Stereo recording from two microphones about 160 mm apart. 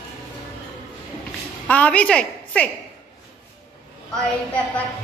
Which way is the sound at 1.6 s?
10° left (ahead or behind).